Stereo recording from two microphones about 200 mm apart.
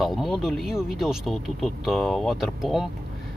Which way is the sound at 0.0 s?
Centre (ahead or behind).